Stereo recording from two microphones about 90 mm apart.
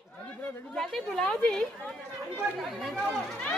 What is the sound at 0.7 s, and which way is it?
A woman's voice, 5° left (ahead or behind).